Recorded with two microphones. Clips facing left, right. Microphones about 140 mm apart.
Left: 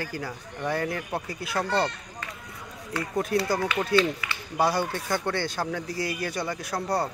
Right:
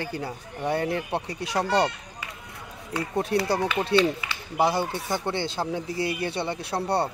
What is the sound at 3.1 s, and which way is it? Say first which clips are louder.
Speech: right 1 dB; 30° right (ahead or behind).